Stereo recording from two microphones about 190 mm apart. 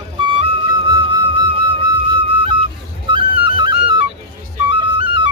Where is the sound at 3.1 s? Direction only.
25° right (ahead or behind).